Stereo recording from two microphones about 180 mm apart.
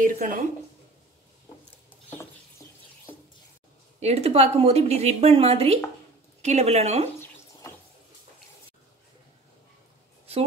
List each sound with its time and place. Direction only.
0.0 s a woman's voice: 50° right (ahead or behind)
4.0 s a woman's voice: 35° right (ahead or behind)